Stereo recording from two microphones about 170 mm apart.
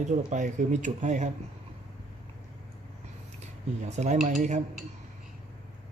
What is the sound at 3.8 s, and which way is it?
Speech, 45° right (ahead or behind).